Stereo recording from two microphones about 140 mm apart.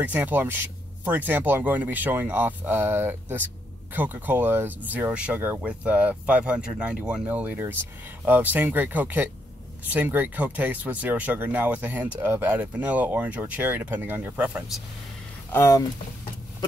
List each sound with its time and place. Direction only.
0.0 s speech: 10° right (ahead or behind)
15.5 s speech: 20° left (ahead or behind)